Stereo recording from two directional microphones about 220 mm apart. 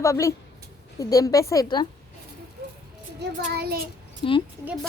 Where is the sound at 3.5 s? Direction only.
45° right (ahead or behind).